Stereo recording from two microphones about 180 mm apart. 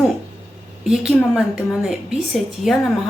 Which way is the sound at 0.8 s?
5° right (ahead or behind).